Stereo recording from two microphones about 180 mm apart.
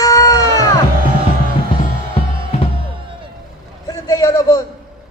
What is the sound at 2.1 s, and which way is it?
Music, 35° left (ahead or behind).